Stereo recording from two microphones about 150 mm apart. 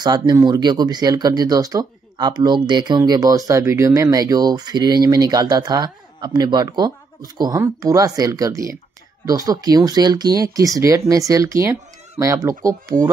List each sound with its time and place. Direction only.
0.0 s speech: 25° right (ahead or behind)